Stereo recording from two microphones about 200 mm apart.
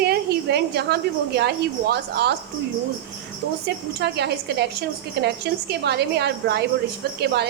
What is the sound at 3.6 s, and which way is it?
A woman's voice, 55° right (ahead or behind).